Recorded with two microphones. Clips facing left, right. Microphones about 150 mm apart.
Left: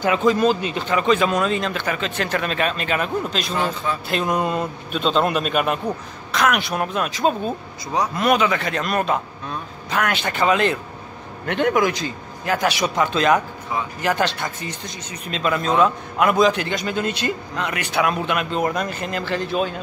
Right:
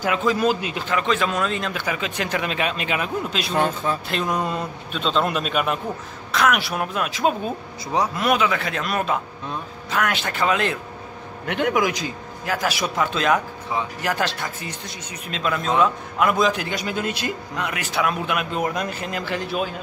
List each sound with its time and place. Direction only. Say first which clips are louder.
0.0 s speech: left 3 dB; centre (ahead or behind)